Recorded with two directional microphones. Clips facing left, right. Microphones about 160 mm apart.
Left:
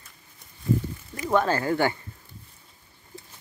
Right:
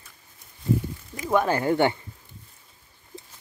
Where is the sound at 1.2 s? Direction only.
10° right (ahead or behind).